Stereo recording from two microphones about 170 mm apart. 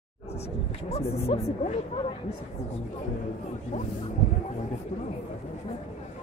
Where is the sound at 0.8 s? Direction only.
35° left (ahead or behind).